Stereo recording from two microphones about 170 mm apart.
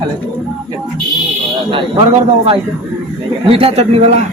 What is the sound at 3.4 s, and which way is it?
Speech, 35° right (ahead or behind).